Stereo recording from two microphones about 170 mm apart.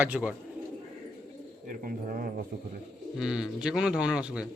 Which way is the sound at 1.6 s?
55° right (ahead or behind).